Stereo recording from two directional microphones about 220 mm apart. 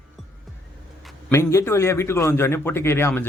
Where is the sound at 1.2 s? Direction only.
10° left (ahead or behind).